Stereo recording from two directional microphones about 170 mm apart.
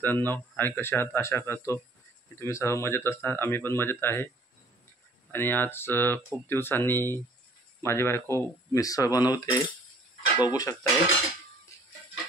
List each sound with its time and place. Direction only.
0.0 s speech: 10° left (ahead or behind)
5.3 s speech: 10° left (ahead or behind)